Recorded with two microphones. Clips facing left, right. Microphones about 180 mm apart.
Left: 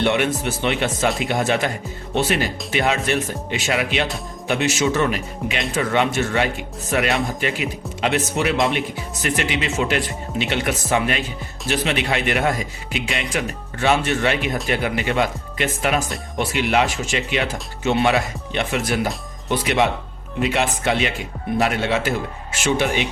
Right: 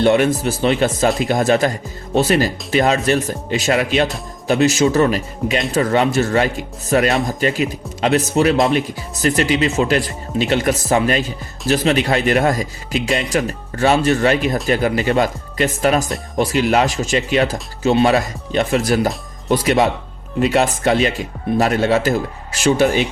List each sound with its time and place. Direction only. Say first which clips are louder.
0.0 s speech: right 5 dB; 35° right (ahead or behind)